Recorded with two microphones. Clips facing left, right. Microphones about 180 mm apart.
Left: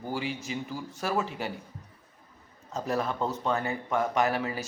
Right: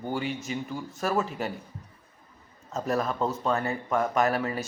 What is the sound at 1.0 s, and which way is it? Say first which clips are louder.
Speech: right 2 dB; 40° right (ahead or behind).